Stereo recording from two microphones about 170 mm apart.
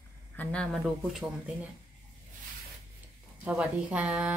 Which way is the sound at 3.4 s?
5° right (ahead or behind).